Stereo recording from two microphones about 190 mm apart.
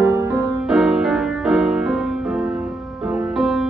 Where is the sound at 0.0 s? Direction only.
15° right (ahead or behind).